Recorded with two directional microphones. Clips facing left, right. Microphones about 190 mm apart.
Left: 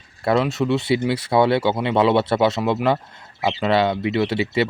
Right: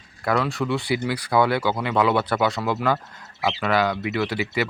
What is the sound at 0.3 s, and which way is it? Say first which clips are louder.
Speech: left 4 dB; 20° left (ahead or behind).